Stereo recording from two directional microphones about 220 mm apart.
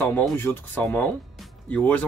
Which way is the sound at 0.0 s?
10° left (ahead or behind).